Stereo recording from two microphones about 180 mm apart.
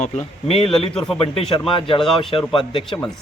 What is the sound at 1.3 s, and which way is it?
A man's voice, 30° left (ahead or behind).